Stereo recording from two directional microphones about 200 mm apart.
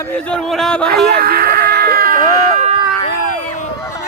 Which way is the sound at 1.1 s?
50° right (ahead or behind).